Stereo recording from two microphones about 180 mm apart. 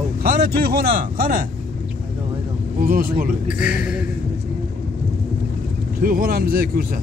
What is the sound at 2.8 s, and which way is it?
Speech, 55° right (ahead or behind).